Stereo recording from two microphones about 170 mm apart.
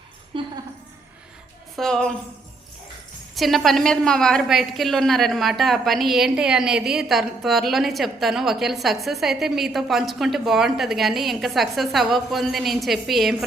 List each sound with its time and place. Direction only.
0.3 s a sound: 30° right (ahead or behind)
1.7 s a woman's voice: 5° left (ahead or behind)
3.3 s a woman's voice: centre (ahead or behind)